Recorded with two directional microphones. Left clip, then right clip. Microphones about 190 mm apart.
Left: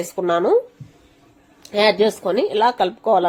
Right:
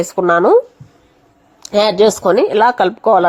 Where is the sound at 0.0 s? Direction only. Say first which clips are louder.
Right 7 dB; 25° right (ahead or behind).